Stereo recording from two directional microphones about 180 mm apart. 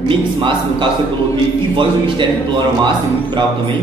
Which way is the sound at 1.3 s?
25° right (ahead or behind).